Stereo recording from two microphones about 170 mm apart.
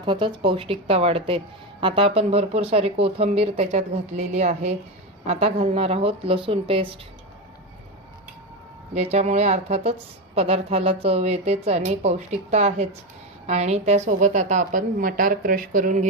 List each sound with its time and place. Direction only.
0.0 s a woman's voice: 30° right (ahead or behind)
9.0 s a woman's voice: 40° right (ahead or behind)